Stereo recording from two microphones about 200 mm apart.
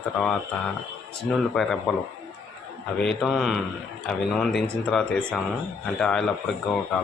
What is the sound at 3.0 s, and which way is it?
Speech, centre (ahead or behind).